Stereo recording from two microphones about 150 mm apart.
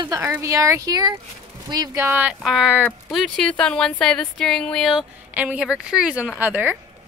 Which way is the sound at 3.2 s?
5° left (ahead or behind).